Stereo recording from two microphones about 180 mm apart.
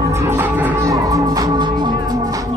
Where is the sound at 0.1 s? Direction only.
15° right (ahead or behind).